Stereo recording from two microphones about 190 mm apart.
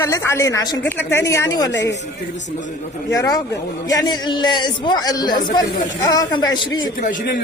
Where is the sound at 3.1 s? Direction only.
20° left (ahead or behind).